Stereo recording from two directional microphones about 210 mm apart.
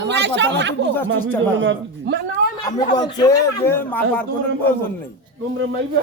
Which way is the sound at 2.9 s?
20° left (ahead or behind).